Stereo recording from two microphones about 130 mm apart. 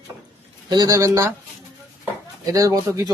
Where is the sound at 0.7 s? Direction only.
30° right (ahead or behind).